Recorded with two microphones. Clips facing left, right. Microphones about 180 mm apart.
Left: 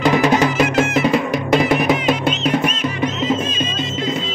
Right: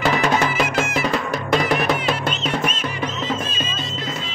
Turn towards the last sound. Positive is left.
turn(degrees=5)  # may be behind; listen again after turning